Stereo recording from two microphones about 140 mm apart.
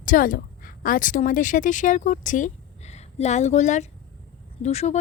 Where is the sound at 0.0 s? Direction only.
75° left (ahead or behind).